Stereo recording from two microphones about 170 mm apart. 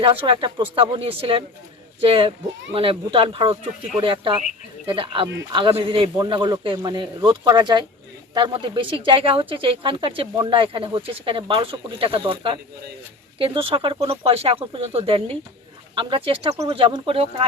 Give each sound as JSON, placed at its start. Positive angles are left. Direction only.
{"t": 0.0, "sound": "a man's voice", "side_deg": -30}